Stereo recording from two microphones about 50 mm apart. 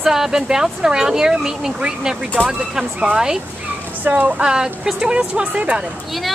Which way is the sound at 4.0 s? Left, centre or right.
Right.